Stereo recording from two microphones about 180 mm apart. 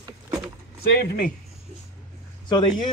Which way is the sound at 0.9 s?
55° left (ahead or behind).